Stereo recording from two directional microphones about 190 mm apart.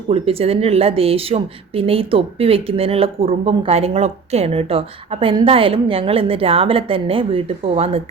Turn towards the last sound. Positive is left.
turn(degrees=-30)  # may be behind; listen again after turning